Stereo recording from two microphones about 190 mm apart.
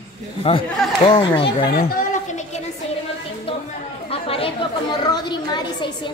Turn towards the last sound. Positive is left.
turn(degrees=25)  # may be behind; listen again after turning